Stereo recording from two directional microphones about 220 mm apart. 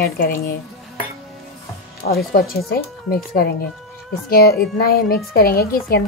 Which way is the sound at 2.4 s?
40° left (ahead or behind).